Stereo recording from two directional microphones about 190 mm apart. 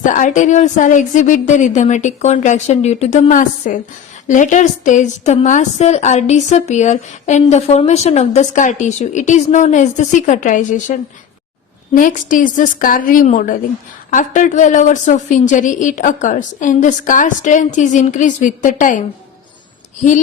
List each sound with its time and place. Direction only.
0.0 s a woman's voice: 40° left (ahead or behind)
11.9 s a woman's voice: 45° left (ahead or behind)